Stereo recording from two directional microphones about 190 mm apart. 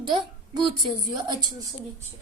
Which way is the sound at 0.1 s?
25° right (ahead or behind).